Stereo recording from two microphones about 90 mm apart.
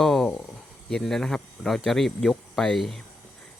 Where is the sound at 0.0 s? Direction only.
5° left (ahead or behind).